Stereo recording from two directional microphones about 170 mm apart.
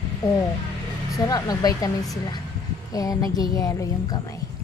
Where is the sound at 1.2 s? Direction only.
20° left (ahead or behind).